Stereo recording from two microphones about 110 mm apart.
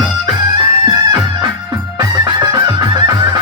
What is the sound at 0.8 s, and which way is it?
Music, 40° right (ahead or behind).